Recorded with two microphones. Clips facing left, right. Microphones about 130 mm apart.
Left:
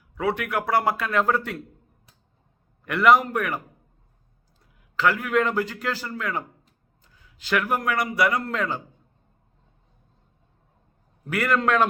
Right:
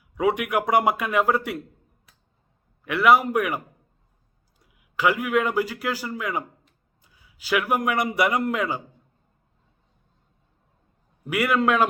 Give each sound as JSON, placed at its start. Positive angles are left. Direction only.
{"t": 0.2, "sound": "speech", "side_deg": -15}
{"t": 2.8, "sound": "speech", "side_deg": -5}
{"t": 4.6, "sound": "a man's voice", "side_deg": -10}
{"t": 11.3, "sound": "speech", "side_deg": -10}